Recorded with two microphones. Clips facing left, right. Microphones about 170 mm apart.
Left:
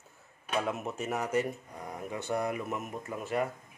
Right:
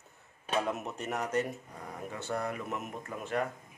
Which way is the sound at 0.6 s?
Centre (ahead or behind).